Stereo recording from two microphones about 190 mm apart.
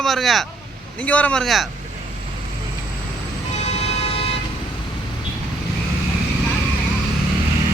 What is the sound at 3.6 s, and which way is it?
Vehicle, 35° left (ahead or behind).